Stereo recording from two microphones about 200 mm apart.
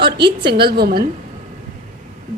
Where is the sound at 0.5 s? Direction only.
55° right (ahead or behind).